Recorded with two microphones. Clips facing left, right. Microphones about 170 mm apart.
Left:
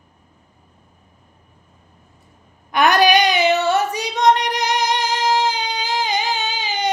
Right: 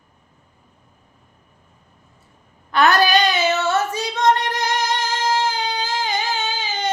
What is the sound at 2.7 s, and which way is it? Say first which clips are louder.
Singing: left 1 dB; 15° left (ahead or behind).